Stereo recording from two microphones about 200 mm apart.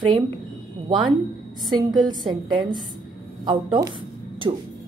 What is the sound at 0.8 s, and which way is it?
A woman's voice, 25° right (ahead or behind).